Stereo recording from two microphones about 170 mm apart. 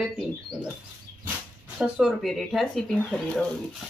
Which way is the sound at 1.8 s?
Centre (ahead or behind).